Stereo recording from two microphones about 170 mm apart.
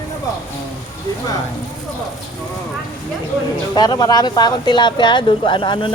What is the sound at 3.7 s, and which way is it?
Speech, 25° left (ahead or behind).